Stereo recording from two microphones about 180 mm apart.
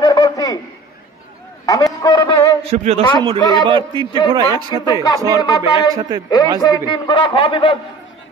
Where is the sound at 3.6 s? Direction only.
25° right (ahead or behind).